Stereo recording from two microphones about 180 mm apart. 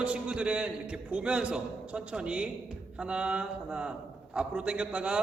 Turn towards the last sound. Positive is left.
turn(degrees=-5)  # may be behind; listen again after turning